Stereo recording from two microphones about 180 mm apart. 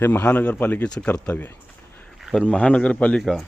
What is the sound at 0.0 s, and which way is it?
A man's voice, 10° left (ahead or behind).